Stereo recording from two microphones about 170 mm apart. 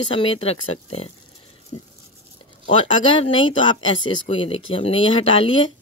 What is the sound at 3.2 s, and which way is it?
Speech, 30° left (ahead or behind).